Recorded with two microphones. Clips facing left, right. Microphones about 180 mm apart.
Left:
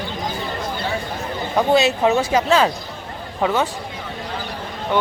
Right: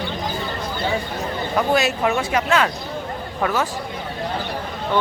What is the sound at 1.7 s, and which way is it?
Speech, 25° left (ahead or behind).